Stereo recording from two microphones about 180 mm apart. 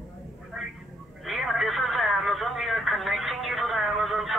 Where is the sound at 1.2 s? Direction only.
Centre (ahead or behind).